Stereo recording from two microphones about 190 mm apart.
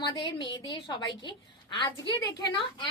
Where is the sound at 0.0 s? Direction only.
25° left (ahead or behind).